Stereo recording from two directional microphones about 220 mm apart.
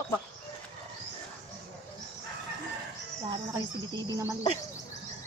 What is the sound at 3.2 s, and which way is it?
Cricket, 20° right (ahead or behind).